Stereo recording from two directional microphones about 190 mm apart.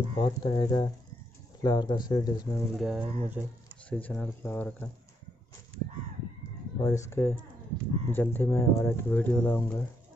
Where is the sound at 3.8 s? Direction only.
5° left (ahead or behind).